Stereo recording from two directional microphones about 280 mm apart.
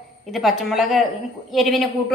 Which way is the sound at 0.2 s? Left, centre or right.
Centre.